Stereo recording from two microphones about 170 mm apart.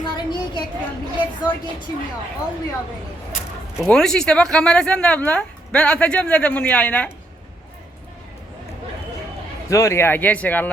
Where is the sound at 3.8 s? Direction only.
5° left (ahead or behind).